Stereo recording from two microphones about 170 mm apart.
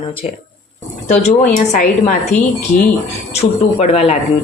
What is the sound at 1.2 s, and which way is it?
Speech, 45° left (ahead or behind).